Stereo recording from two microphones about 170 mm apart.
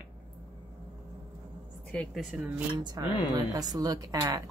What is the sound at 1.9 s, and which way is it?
Speech, 5° left (ahead or behind).